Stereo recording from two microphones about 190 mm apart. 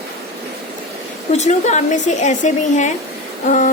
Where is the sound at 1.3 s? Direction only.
35° left (ahead or behind).